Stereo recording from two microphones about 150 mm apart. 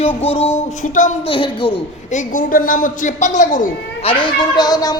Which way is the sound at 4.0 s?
35° left (ahead or behind).